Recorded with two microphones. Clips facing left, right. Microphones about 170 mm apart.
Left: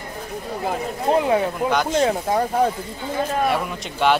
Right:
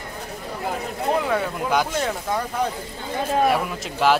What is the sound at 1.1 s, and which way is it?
Speech, 25° left (ahead or behind).